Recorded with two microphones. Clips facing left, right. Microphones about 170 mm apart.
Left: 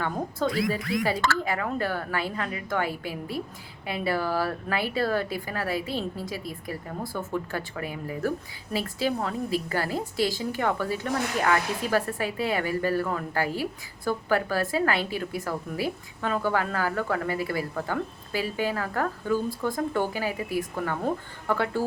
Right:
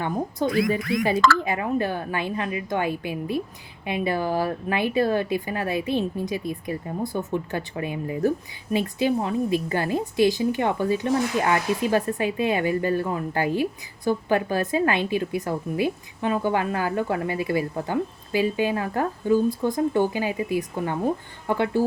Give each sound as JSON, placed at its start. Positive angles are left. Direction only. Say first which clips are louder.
{"t": 0.0, "sound": "a woman's voice", "louder": "right 3 dB", "side_deg": -20}